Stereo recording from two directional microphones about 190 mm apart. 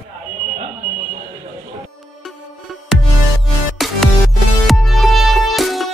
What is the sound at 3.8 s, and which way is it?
Music, centre (ahead or behind).